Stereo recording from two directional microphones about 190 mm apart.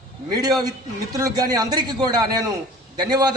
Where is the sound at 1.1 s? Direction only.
20° right (ahead or behind).